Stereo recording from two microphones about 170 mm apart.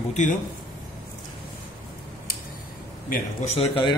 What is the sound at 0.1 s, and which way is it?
Speech, 45° left (ahead or behind).